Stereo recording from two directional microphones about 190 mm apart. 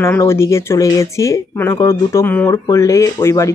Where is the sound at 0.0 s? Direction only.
15° left (ahead or behind).